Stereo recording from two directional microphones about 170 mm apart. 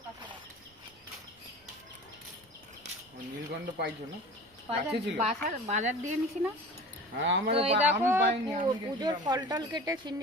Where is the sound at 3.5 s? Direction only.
85° right.